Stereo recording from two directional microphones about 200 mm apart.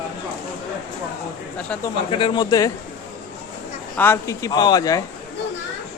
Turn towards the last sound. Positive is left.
turn(degrees=20)  # may be behind; listen again after turning